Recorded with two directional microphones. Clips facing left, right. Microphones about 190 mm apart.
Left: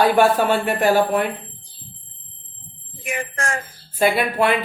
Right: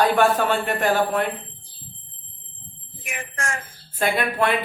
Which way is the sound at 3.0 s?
35° left (ahead or behind).